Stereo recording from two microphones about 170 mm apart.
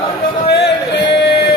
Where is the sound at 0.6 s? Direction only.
90° left.